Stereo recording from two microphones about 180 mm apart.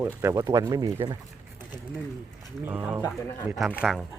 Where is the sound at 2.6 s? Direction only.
10° right (ahead or behind).